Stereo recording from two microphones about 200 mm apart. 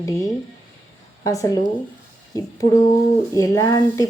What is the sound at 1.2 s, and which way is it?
Speech, 15° left (ahead or behind).